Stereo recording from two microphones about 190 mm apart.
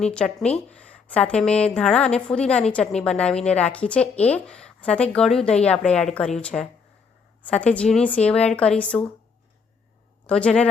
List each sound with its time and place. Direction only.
0.0 s a woman's voice: 5° left (ahead or behind)
10.2 s a woman's voice: 5° left (ahead or behind)